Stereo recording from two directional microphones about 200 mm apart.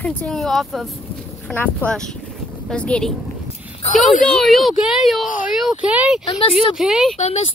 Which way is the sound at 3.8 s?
35° left (ahead or behind).